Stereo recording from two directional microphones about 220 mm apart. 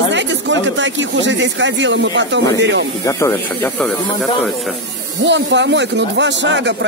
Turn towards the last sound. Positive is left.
turn(degrees=-55)  # may be behind; listen again after turning